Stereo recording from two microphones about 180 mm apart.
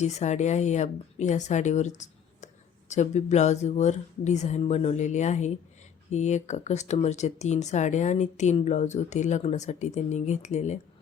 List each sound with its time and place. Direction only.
0.0 s speech: 40° left (ahead or behind)